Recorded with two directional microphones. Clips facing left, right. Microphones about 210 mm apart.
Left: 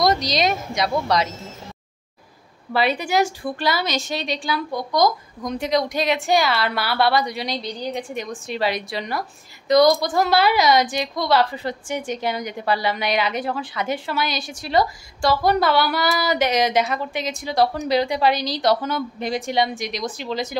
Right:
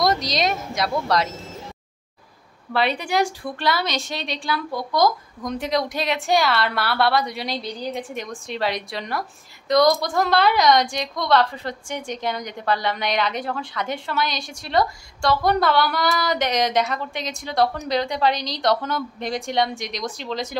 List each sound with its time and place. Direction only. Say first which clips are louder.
0.0 s a woman's voice: left 2 dB; centre (ahead or behind)
2.7 s a woman's voice: left 2 dB; centre (ahead or behind)